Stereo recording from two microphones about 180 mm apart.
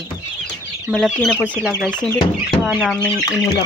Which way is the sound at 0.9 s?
Centre (ahead or behind).